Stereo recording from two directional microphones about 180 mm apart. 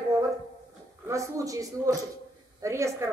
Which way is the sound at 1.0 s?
15° right (ahead or behind).